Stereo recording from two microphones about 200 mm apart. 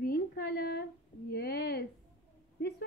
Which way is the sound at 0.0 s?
50° left (ahead or behind).